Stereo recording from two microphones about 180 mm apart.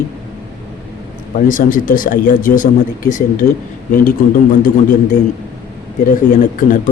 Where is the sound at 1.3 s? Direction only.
50° left (ahead or behind).